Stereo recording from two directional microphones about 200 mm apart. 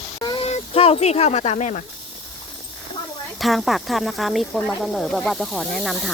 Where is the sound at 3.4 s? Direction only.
Centre (ahead or behind).